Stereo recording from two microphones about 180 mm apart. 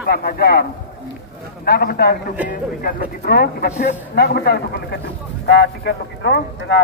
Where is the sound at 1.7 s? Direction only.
60° left (ahead or behind).